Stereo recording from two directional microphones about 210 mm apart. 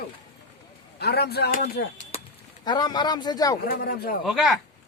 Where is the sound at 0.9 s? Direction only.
50° left (ahead or behind).